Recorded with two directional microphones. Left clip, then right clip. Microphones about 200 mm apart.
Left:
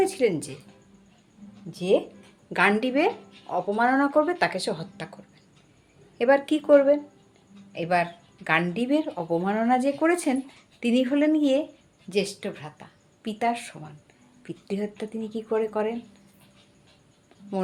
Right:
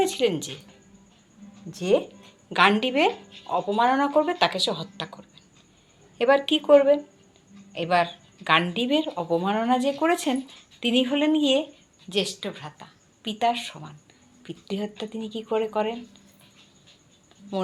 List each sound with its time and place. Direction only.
0.2 s speech: 15° left (ahead or behind)
1.7 s a woman's voice: 10° left (ahead or behind)